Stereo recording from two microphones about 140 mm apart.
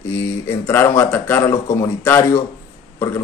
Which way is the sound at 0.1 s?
20° left (ahead or behind).